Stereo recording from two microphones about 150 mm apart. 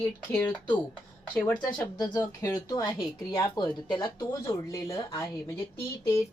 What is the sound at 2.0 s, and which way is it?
Speech, 25° left (ahead or behind).